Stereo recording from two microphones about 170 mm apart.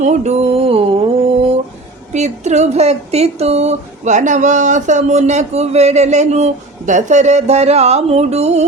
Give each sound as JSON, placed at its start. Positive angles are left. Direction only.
{"t": 0.0, "sound": "mantra", "side_deg": -45}
{"t": 2.1, "sound": "speech", "side_deg": -40}